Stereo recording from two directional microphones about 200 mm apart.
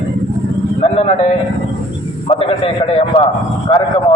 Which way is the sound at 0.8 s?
30° left (ahead or behind).